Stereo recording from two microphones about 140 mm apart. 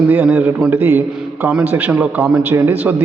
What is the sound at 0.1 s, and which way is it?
A man's voice, 15° right (ahead or behind).